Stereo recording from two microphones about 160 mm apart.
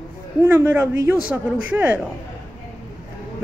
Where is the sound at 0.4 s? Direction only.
15° right (ahead or behind).